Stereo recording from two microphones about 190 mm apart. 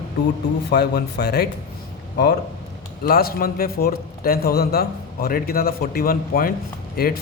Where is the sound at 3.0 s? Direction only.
50° left (ahead or behind).